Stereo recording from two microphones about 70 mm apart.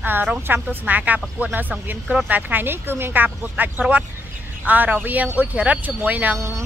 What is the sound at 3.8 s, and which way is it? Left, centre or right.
Speech, centre.